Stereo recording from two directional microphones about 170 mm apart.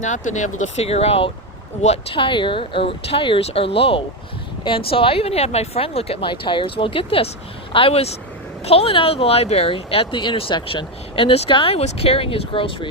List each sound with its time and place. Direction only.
0.0 s speech: 45° left (ahead or behind)